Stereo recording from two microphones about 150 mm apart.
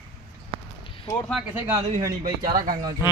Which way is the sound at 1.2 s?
5° left (ahead or behind).